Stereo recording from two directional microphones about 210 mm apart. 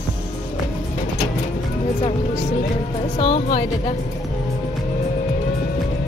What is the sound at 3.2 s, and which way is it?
Speech, 30° left (ahead or behind).